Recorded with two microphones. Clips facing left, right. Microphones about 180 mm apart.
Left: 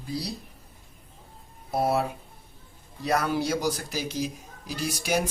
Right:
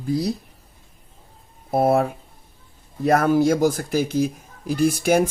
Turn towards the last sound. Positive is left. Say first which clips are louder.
# right 10 dB
turn(degrees=-50)  # may be behind; listen again after turning